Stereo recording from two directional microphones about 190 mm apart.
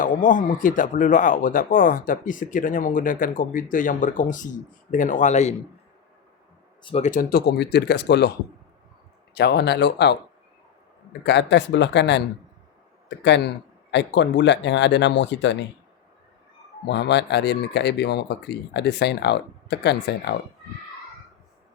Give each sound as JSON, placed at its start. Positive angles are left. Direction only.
{"t": 0.0, "sound": "speech", "side_deg": 45}
{"t": 6.8, "sound": "speech", "side_deg": 35}
{"t": 9.3, "sound": "speech", "side_deg": 60}
{"t": 11.2, "sound": "speech", "side_deg": 65}
{"t": 16.9, "sound": "speech", "side_deg": 65}